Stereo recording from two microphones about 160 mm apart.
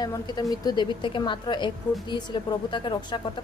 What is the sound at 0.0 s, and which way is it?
Speech, 25° left (ahead or behind).